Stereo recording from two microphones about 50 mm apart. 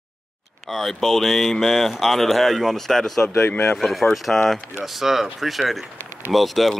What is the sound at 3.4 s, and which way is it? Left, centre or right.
Speech, left.